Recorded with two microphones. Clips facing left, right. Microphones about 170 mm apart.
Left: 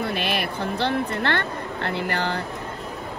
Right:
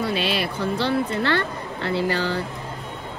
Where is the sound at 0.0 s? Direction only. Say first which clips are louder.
Right 2 dB; 55° left (ahead or behind).